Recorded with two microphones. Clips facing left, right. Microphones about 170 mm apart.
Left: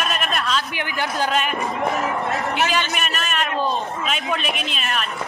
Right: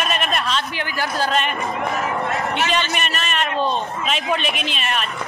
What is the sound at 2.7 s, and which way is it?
A man's voice, 5° left (ahead or behind).